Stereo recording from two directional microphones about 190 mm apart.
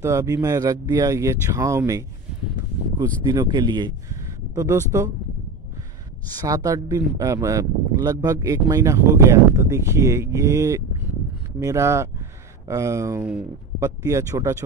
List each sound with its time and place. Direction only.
0.0 s speech: 15° right (ahead or behind)
6.3 s speech: 20° right (ahead or behind)